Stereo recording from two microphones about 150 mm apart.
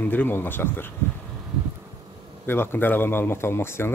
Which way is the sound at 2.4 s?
15° left (ahead or behind).